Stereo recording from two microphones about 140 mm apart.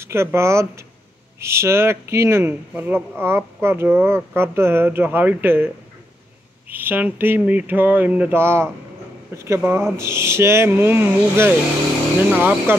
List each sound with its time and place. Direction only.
0.0 s speech: 20° right (ahead or behind)
6.7 s speech: 15° right (ahead or behind)